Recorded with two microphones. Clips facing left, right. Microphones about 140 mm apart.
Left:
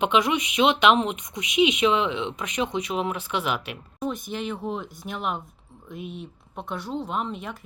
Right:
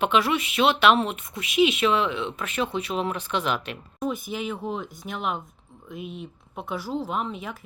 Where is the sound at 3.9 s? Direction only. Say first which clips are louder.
Right 1 dB; 5° right (ahead or behind).